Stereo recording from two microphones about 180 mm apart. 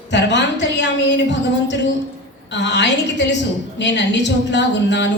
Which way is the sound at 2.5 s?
75° left (ahead or behind).